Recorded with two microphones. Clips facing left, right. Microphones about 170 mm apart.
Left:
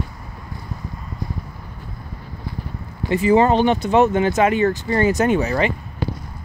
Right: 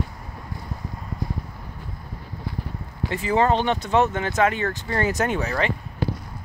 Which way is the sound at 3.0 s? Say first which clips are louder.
Left 6 dB; 5° left (ahead or behind).